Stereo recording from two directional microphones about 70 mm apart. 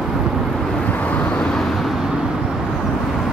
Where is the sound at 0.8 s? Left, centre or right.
Left.